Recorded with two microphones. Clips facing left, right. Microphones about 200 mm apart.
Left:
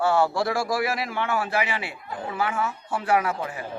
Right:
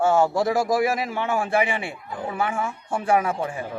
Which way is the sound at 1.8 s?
25° right (ahead or behind).